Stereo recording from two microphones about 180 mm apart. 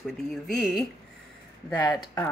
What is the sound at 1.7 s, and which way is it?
Speech, 20° left (ahead or behind).